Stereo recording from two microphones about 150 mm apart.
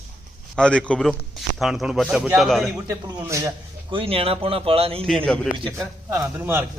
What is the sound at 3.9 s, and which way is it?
Speech, 40° right (ahead or behind).